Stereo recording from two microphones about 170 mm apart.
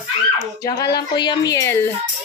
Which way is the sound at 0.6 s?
20° left (ahead or behind).